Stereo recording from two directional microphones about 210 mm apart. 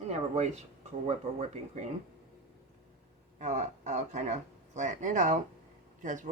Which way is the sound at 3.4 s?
35° right (ahead or behind).